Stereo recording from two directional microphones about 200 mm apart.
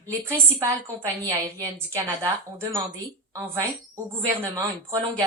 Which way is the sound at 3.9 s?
15° right (ahead or behind).